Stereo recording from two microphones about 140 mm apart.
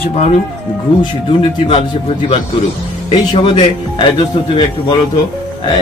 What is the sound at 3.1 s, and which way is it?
A man's voice, 35° left (ahead or behind).